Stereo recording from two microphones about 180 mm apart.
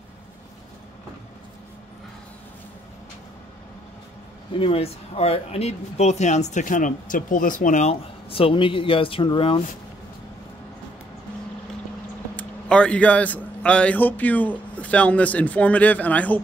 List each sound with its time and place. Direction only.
4.6 s speech: 30° left (ahead or behind)
12.4 s a man's voice: 5° left (ahead or behind)